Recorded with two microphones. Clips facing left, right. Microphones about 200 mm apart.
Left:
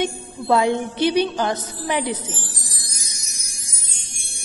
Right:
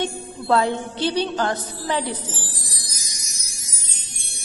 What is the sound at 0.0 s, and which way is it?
Music, 15° left (ahead or behind).